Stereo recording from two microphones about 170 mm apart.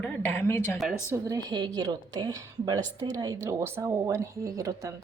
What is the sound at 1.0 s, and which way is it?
A woman's voice, 20° right (ahead or behind).